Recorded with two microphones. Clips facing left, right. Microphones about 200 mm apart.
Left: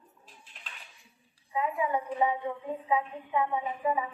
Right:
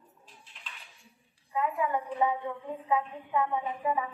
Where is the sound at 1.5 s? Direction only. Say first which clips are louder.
Even; 15° left (ahead or behind).